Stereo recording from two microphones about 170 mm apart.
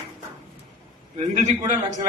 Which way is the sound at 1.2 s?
45° right (ahead or behind).